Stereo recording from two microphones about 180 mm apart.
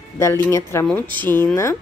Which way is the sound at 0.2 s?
15° left (ahead or behind).